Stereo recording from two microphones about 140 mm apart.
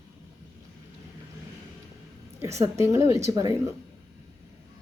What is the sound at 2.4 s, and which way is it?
A woman's voice, 20° right (ahead or behind).